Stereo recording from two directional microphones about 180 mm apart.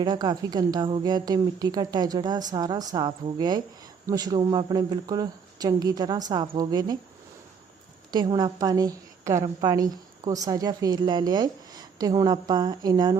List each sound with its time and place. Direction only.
0.0 s a woman's voice: 25° right (ahead or behind)
8.1 s a woman's voice: 25° right (ahead or behind)